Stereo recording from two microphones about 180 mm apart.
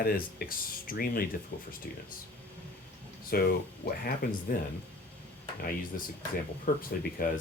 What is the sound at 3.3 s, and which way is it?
Speech, 55° left (ahead or behind).